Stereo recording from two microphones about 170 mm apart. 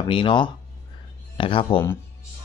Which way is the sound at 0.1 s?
30° left (ahead or behind).